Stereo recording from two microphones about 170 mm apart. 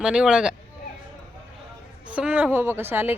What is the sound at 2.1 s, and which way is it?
Speech, 10° right (ahead or behind).